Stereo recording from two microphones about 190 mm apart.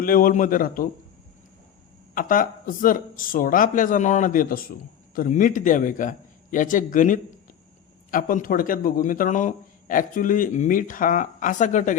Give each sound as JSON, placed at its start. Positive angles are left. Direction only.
{"t": 0.0, "sound": "a man's voice", "side_deg": 45}
{"t": 2.1, "sound": "a man's voice", "side_deg": 45}